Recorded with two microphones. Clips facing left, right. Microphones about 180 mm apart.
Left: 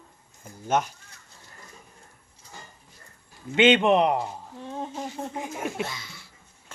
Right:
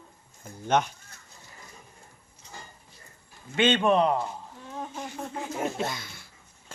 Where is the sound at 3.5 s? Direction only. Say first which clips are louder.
Left 4 dB; 20° left (ahead or behind).